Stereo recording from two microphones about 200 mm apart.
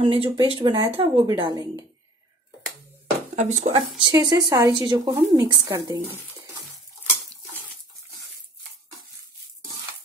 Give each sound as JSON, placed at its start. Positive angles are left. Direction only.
{"t": 0.0, "sound": "speech", "side_deg": -25}
{"t": 3.3, "sound": "speech", "side_deg": -35}
{"t": 3.7, "sound": "speech", "side_deg": -20}